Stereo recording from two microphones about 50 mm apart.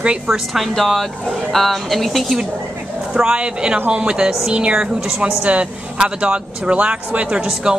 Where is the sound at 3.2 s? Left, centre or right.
Centre.